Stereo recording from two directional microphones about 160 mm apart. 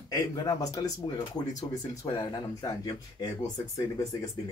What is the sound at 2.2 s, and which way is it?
Speech, 25° left (ahead or behind).